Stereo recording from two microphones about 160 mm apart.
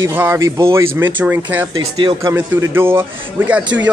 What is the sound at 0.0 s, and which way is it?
Speech, 15° right (ahead or behind).